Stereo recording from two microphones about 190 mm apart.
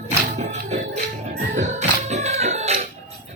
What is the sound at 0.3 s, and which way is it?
Music, 35° right (ahead or behind).